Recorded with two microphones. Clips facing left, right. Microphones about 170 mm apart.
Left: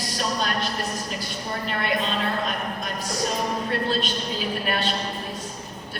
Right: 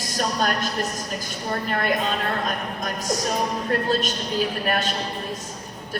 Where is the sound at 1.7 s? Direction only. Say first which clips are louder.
Right 2 dB; 45° right (ahead or behind).